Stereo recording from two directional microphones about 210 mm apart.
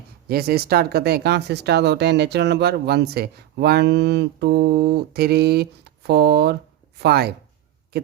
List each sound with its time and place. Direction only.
0.3 s speech: 45° right (ahead or behind)